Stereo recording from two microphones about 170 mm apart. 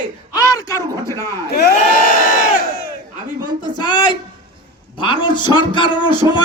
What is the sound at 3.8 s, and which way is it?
A man's voice, 25° left (ahead or behind).